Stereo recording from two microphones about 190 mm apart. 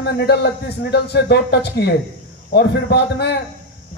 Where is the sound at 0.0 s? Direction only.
60° left (ahead or behind).